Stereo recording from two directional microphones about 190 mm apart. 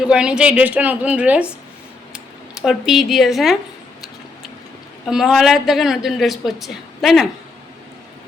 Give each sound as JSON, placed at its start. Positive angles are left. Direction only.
{"t": 0.0, "sound": "a woman's voice", "side_deg": -5}
{"t": 5.0, "sound": "a woman's voice", "side_deg": 0}